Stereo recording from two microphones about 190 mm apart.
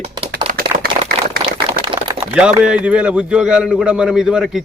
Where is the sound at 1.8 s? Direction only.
25° right (ahead or behind).